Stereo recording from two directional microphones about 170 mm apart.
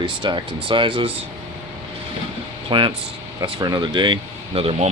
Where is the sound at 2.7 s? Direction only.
30° right (ahead or behind).